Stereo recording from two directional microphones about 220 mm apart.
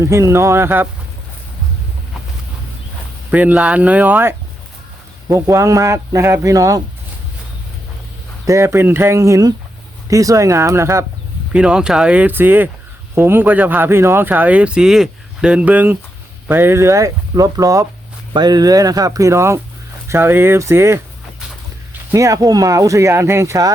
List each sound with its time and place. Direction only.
0.0 s speech: 15° right (ahead or behind)
3.3 s speech: 5° right (ahead or behind)
8.4 s speech: 15° right (ahead or behind)
22.1 s speech: 15° right (ahead or behind)